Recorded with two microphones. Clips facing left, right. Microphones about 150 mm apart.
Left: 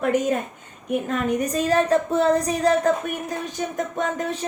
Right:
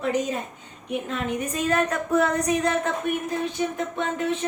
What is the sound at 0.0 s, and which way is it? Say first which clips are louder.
A woman's voice: left 4 dB; 50° left (ahead or behind).